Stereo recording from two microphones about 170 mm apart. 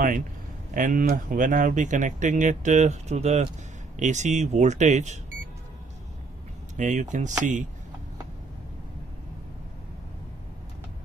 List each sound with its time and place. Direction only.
0.7 s speech: 50° right (ahead or behind)
6.8 s speech: 45° right (ahead or behind)